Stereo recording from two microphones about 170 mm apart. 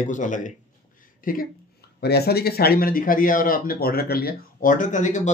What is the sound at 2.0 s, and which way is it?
Speech, 70° left (ahead or behind).